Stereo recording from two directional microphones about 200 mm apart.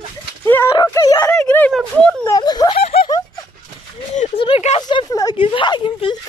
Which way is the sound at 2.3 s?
20° left (ahead or behind).